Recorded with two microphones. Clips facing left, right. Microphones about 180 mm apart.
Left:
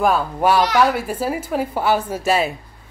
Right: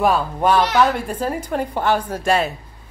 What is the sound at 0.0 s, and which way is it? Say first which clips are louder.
A woman's voice: even; 5° left (ahead or behind).